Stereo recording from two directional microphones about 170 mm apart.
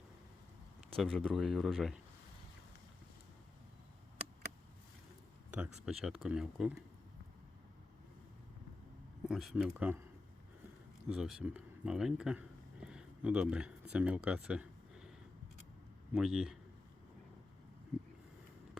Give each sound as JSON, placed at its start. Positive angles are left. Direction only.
{"t": 0.9, "sound": "speech", "side_deg": 5}
{"t": 5.5, "sound": "speech", "side_deg": -5}
{"t": 9.2, "sound": "speech", "side_deg": 0}
{"t": 11.1, "sound": "speech", "side_deg": -5}
{"t": 16.1, "sound": "speech", "side_deg": -5}